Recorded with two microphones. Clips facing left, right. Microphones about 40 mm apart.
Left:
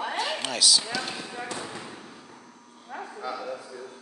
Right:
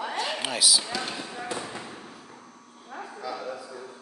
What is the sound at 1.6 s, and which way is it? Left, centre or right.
Fireworks, centre.